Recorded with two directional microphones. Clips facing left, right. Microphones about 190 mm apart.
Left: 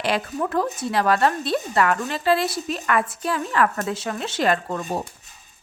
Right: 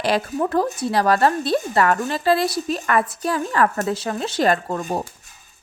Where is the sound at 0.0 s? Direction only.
35° right (ahead or behind).